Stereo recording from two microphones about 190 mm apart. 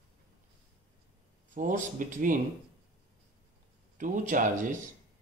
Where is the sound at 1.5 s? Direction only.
40° right (ahead or behind).